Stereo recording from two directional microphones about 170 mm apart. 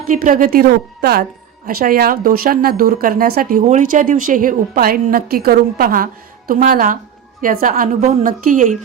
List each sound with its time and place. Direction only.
0.1 s a woman's voice: 50° right (ahead or behind)
1.6 s a woman's voice: 60° right (ahead or behind)
3.7 s a woman's voice: 50° right (ahead or behind)